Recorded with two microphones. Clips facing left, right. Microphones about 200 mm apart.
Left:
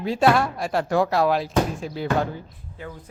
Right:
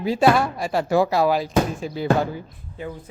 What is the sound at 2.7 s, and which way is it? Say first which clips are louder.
Speech: right 5 dB; 15° right (ahead or behind).